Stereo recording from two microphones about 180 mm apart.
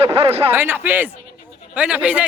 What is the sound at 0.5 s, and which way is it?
Speech, 10° right (ahead or behind).